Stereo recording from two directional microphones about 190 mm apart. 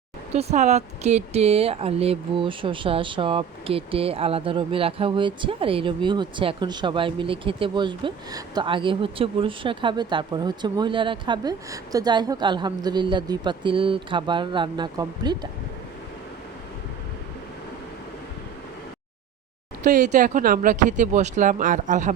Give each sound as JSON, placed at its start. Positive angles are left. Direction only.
{"t": 0.3, "sound": "speech", "side_deg": -35}
{"t": 19.8, "sound": "speech", "side_deg": -40}